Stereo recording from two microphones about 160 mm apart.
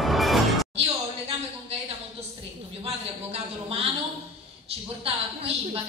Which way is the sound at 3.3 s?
40° right (ahead or behind).